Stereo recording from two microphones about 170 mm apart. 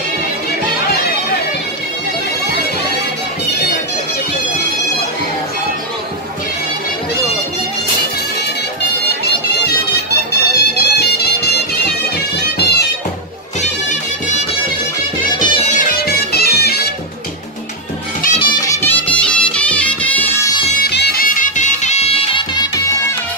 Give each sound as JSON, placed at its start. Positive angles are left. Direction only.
{"t": 10.3, "sound": "music", "side_deg": 70}
{"t": 12.4, "sound": "bagpipes", "side_deg": 75}
{"t": 13.6, "sound": "music", "side_deg": 45}
{"t": 15.3, "sound": "music", "side_deg": 25}
{"t": 16.1, "sound": "music", "side_deg": 65}
{"t": 18.4, "sound": "music", "side_deg": 25}
{"t": 18.8, "sound": "music", "side_deg": 10}
{"t": 20.8, "sound": "music", "side_deg": 70}